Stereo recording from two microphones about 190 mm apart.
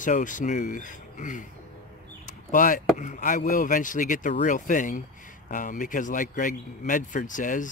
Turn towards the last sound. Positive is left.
turn(degrees=45)  # may be behind; listen again after turning